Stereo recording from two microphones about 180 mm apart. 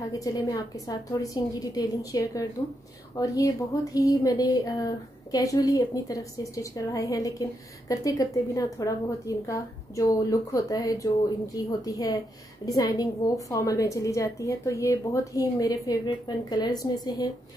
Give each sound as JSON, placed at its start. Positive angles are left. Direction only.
{"t": 0.2, "sound": "a woman's voice", "side_deg": 20}